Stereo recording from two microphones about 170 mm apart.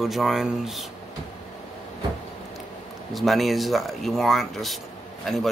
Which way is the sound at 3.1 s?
Centre (ahead or behind).